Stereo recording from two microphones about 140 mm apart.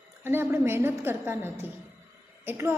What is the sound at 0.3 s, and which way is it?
A woman's voice, 15° right (ahead or behind).